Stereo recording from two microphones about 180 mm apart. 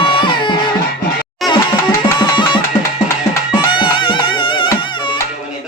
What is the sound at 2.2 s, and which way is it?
Music, 25° left (ahead or behind).